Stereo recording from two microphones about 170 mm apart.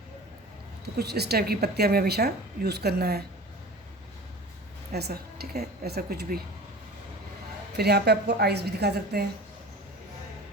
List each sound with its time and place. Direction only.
0.9 s a woman's voice: 70° right (ahead or behind)
4.9 s a woman's voice: 70° right (ahead or behind)
7.8 s a woman's voice: 70° right (ahead or behind)